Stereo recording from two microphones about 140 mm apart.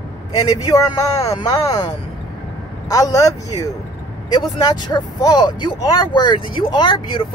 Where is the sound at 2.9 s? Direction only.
25° left (ahead or behind).